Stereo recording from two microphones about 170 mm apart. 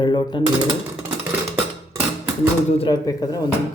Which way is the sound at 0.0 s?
25° left (ahead or behind).